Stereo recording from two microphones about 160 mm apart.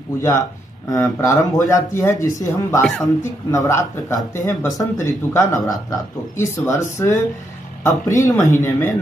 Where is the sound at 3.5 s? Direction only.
15° left (ahead or behind).